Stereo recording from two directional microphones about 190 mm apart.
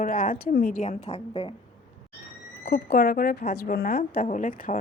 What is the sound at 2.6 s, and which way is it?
A woman's voice, 55° left (ahead or behind).